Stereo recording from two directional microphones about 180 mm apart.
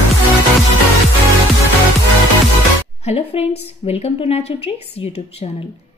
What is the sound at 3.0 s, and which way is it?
A woman's voice, 35° left (ahead or behind).